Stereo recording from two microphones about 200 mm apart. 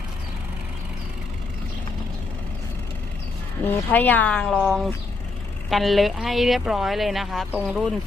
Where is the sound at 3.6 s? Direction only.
10° left (ahead or behind).